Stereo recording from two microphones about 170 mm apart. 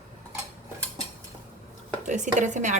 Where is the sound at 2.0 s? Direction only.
45° right (ahead or behind).